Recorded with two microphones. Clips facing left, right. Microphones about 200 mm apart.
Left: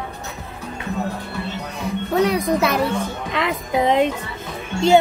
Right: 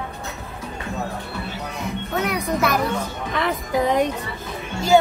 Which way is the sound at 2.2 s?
30° left (ahead or behind).